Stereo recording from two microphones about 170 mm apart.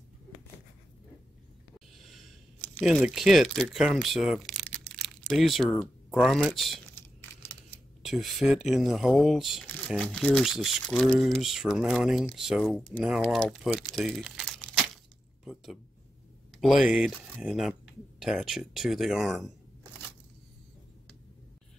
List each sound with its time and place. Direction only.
2.8 s speech: 5° right (ahead or behind)
4.6 s a sound: 5° left (ahead or behind)
7.0 s computer keyboard: 10° left (ahead or behind)
8.0 s speech: centre (ahead or behind)